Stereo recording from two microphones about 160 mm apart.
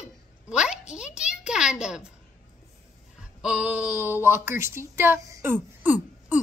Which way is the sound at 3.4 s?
5° right (ahead or behind).